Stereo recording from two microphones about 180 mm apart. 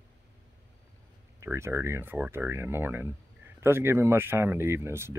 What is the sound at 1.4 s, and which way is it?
Speech, 15° right (ahead or behind).